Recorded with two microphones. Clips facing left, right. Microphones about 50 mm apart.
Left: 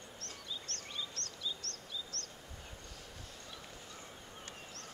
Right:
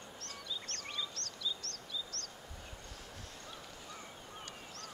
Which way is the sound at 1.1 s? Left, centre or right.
Left.